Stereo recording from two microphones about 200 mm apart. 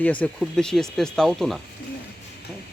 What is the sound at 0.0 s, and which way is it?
Speech, 5° left (ahead or behind).